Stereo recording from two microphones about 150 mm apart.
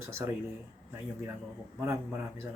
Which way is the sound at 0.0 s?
15° right (ahead or behind).